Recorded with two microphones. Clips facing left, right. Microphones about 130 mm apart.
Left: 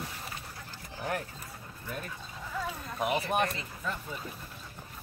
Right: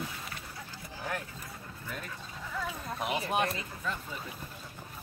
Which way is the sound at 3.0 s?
Centre (ahead or behind).